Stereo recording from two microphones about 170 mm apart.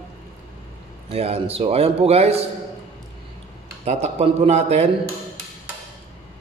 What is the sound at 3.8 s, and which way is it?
A man's voice, 40° right (ahead or behind).